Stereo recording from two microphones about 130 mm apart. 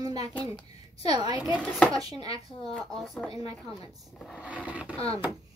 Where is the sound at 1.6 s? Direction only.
5° left (ahead or behind).